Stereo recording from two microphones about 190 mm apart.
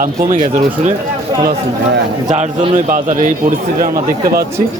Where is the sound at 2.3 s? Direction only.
40° right (ahead or behind).